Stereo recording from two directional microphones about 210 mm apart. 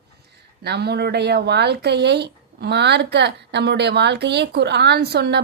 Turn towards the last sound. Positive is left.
turn(degrees=-50)  # may be behind; listen again after turning